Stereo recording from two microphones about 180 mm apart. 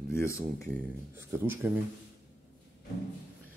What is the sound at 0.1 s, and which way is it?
Speech, 15° left (ahead or behind).